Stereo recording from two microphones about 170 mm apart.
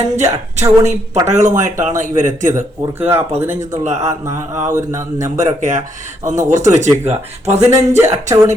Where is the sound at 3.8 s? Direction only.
40° right (ahead or behind).